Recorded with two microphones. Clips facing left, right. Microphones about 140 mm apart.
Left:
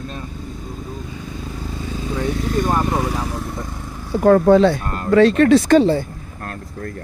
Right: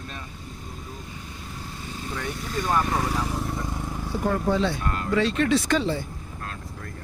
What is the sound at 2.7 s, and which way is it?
Vehicle, 25° left (ahead or behind).